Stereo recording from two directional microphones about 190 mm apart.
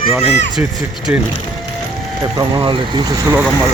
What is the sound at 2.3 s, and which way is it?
Speech, 25° right (ahead or behind).